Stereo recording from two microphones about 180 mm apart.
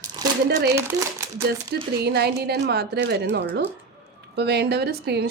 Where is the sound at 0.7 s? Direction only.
15° right (ahead or behind).